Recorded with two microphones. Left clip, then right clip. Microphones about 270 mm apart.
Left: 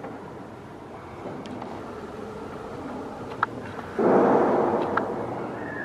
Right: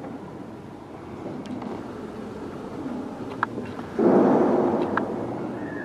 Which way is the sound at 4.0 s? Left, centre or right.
Centre.